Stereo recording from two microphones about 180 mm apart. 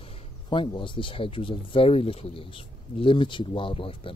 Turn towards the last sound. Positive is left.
turn(degrees=30)  # may be behind; listen again after turning